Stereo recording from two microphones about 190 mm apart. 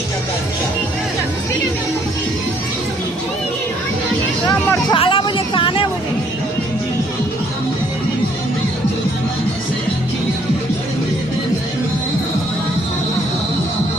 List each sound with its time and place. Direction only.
4.4 s vehicle: 15° left (ahead or behind)
4.9 s vehicle: 25° left (ahead or behind)